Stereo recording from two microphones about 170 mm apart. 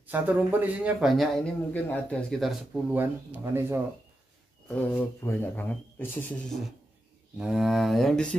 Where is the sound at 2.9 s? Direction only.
10° right (ahead or behind).